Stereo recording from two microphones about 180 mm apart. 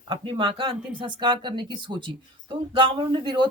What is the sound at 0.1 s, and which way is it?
Speech, 30° right (ahead or behind).